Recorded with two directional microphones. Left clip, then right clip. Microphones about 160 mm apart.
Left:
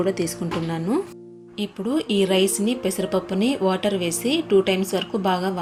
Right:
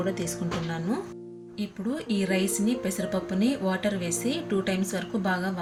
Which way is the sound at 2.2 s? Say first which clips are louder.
Left 8 dB; 20° left (ahead or behind).